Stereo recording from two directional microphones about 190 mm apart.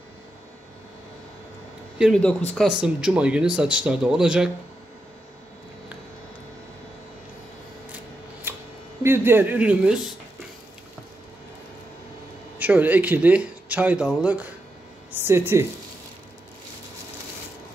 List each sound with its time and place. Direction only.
2.0 s speech: centre (ahead or behind)
9.0 s speech: 10° right (ahead or behind)
12.5 s speech: 10° right (ahead or behind)